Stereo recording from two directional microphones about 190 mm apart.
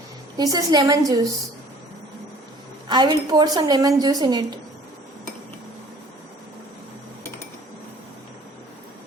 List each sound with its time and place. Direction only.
0.3 s a woman's voice: 20° right (ahead or behind)
2.9 s a woman's voice: 20° right (ahead or behind)